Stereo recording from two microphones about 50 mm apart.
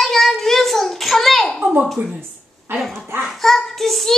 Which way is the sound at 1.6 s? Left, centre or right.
Right.